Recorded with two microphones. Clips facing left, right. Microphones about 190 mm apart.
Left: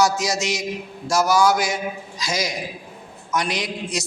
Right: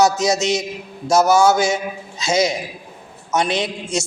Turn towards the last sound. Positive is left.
turn(degrees=-25)  # may be behind; listen again after turning